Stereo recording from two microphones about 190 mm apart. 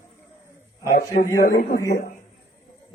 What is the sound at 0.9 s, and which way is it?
Speech, 45° left (ahead or behind).